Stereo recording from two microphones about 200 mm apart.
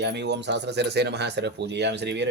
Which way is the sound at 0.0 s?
60° right (ahead or behind).